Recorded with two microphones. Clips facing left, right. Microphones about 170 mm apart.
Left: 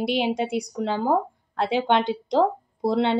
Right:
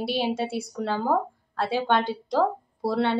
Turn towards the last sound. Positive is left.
turn(degrees=20)  # may be behind; listen again after turning